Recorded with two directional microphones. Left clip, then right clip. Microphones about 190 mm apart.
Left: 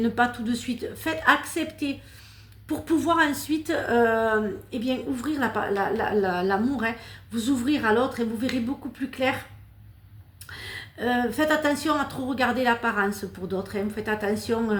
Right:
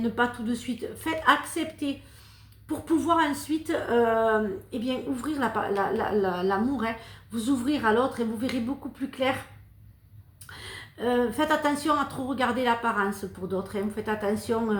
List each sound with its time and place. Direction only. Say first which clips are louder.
0.0 s a woman's voice: left 3 dB; 35° left (ahead or behind)
10.5 s a woman's voice: left 4 dB; 35° left (ahead or behind)